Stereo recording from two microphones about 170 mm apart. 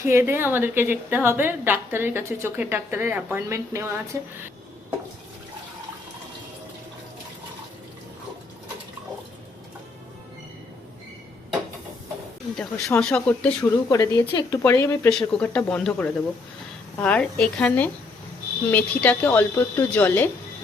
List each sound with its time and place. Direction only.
0.0 s a woman's voice: 15° right (ahead or behind)
12.5 s speech: 5° left (ahead or behind)
13.9 s speech: 20° left (ahead or behind)
15.1 s speech: 5° left (ahead or behind)